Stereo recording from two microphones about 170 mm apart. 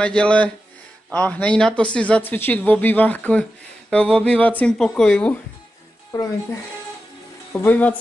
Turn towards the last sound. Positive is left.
turn(degrees=10)  # may be behind; listen again after turning